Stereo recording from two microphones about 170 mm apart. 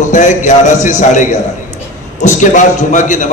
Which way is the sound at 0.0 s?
45° left (ahead or behind).